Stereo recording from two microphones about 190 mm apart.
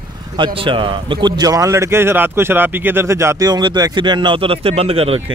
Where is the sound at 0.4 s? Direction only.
25° right (ahead or behind).